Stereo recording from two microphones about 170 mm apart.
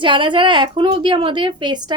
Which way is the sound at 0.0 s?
30° right (ahead or behind).